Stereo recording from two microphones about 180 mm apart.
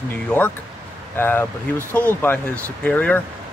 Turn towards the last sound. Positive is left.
turn(degrees=10)  # may be behind; listen again after turning